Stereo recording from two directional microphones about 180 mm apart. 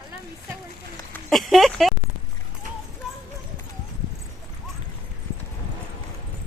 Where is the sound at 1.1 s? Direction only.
Centre (ahead or behind).